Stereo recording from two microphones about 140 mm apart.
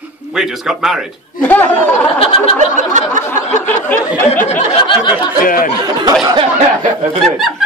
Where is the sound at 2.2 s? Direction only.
40° left (ahead or behind).